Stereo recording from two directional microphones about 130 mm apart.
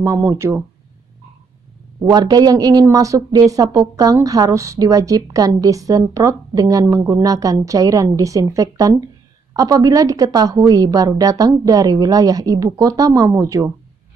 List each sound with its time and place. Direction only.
0.0 s speech: 20° right (ahead or behind)
2.0 s speech: 30° right (ahead or behind)